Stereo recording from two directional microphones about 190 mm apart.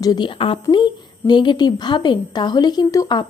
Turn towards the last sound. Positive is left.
turn(degrees=20)  # may be behind; listen again after turning